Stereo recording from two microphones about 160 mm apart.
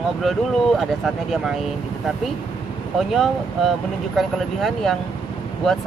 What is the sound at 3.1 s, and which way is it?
Speech, centre (ahead or behind).